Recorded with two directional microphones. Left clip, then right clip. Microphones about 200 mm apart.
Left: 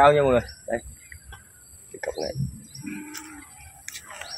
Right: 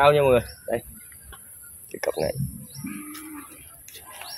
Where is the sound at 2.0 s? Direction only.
55° right (ahead or behind).